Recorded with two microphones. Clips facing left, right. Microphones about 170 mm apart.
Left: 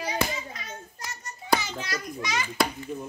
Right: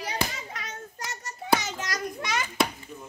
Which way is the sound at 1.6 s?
50° right (ahead or behind).